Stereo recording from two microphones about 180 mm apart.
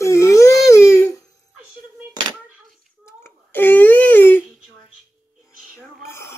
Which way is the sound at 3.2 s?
10° left (ahead or behind).